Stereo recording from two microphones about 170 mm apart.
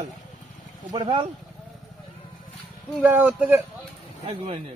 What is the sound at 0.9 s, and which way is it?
Speech, 25° right (ahead or behind).